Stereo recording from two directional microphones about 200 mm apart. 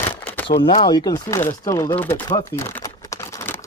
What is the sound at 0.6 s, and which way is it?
Speech, 25° left (ahead or behind).